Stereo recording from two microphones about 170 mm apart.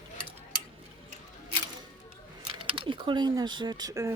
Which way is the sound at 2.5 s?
30° right (ahead or behind).